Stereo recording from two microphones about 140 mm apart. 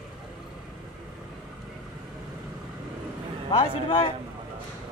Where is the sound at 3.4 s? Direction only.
40° left (ahead or behind).